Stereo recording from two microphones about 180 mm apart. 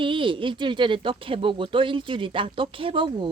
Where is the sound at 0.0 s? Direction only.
30° right (ahead or behind).